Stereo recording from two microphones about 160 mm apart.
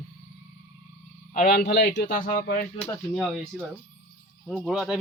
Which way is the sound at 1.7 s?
90° left.